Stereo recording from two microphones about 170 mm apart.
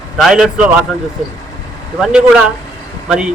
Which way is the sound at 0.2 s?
5° right (ahead or behind).